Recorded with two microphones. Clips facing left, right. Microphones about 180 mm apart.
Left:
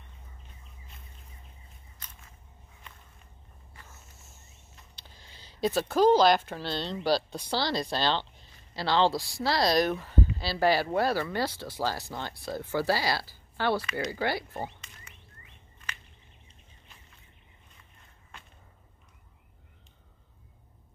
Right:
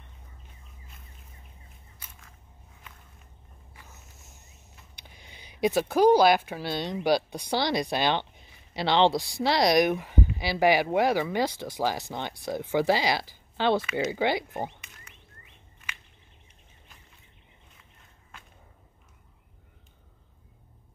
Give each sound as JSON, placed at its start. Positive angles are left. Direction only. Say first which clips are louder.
{"t": 2.0, "sound": "a sound", "louder": "even", "side_deg": -10}
{"t": 3.7, "sound": "walk", "louder": "even", "side_deg": -15}
{"t": 4.9, "sound": "speech", "louder": "right 4 dB", "side_deg": -15}